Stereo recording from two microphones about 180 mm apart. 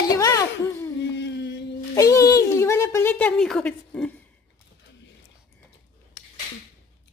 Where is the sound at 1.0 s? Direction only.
70° left (ahead or behind).